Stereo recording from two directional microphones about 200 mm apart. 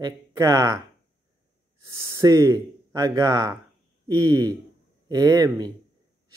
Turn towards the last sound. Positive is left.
turn(degrees=-20)  # may be behind; listen again after turning